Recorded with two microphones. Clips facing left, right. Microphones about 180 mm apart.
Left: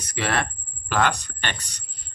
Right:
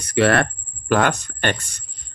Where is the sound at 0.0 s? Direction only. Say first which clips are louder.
Right 9 dB; 65° right (ahead or behind); by 1.8 s 50° right (ahead or behind).